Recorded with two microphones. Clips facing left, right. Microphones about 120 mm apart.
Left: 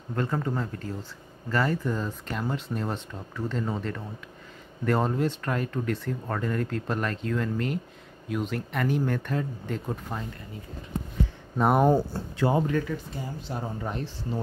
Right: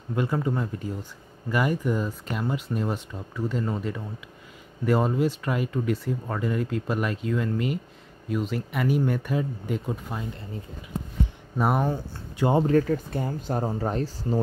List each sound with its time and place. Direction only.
0.1 s speech: 10° right (ahead or behind)
4.8 s speech: 5° right (ahead or behind)
11.5 s speech: 5° right (ahead or behind)
12.5 s speech: 40° right (ahead or behind)